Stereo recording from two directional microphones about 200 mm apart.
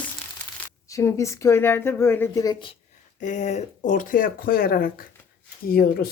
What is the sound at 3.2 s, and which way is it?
Speech, 40° left (ahead or behind).